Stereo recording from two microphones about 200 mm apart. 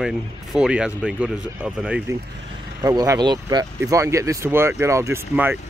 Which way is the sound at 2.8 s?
20° right (ahead or behind).